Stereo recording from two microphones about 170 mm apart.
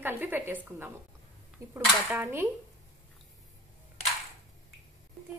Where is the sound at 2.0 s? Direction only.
10° right (ahead or behind).